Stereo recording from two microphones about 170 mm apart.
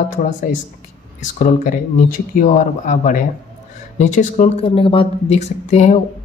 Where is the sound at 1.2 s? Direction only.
45° left (ahead or behind).